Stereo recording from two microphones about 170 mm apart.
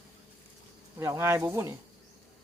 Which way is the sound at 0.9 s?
15° right (ahead or behind).